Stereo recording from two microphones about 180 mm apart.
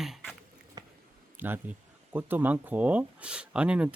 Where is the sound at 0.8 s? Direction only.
25° right (ahead or behind).